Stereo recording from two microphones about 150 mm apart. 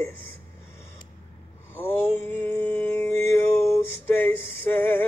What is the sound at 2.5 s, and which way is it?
Music, 15° left (ahead or behind).